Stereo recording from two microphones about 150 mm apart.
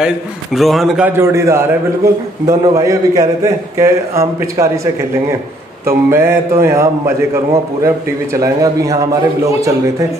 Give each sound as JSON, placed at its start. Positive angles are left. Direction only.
{"t": 0.0, "sound": "a man's voice", "side_deg": 0}
{"t": 1.0, "sound": "a man's voice", "side_deg": -15}
{"t": 5.9, "sound": "a man's voice", "side_deg": -15}